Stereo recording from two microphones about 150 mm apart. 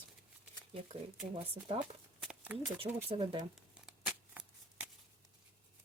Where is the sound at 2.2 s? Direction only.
5° right (ahead or behind).